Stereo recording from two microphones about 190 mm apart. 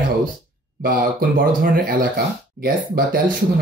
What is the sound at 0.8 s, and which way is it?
Speech, 50° right (ahead or behind).